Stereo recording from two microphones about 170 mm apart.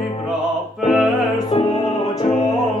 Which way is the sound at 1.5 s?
35° left (ahead or behind).